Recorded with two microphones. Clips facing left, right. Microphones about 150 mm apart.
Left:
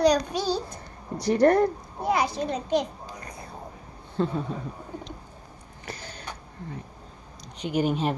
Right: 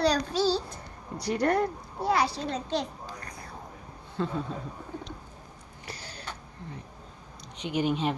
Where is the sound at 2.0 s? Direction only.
20° left (ahead or behind).